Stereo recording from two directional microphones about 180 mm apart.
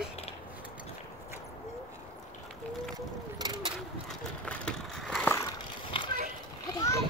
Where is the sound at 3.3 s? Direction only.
25° right (ahead or behind).